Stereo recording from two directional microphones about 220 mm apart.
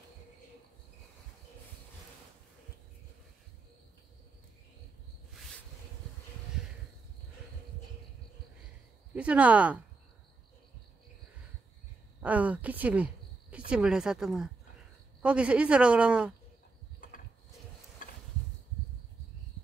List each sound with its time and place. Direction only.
9.1 s speech: 5° right (ahead or behind)
12.2 s speech: 5° right (ahead or behind)
17.0 s mechanisms: 40° left (ahead or behind)
18.0 s a sound: 35° left (ahead or behind)